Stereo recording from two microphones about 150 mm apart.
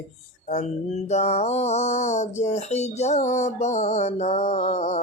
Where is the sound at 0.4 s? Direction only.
50° left (ahead or behind).